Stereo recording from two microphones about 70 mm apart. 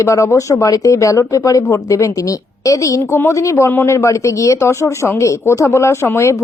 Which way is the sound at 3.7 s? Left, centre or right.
Left.